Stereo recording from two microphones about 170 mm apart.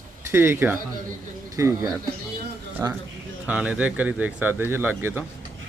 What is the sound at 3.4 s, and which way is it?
Speech, 10° right (ahead or behind).